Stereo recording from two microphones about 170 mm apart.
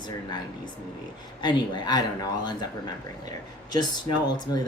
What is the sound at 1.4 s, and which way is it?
Speech, 25° left (ahead or behind).